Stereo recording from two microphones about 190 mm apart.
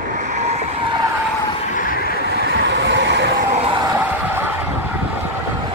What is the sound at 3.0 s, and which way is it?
Vehicle, 65° right (ahead or behind).